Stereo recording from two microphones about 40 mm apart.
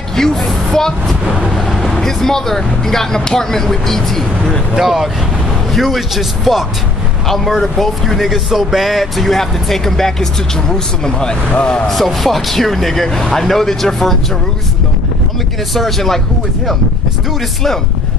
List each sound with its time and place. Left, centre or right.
0.1 s speech: centre
1.7 s vehicle: centre
2.0 s speech: centre
4.7 s speech: centre; by 11.8 s left
11.9 s speech: centre
15.7 s speech: centre